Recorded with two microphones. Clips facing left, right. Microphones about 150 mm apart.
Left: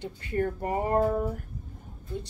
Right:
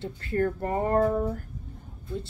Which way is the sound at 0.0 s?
20° left (ahead or behind).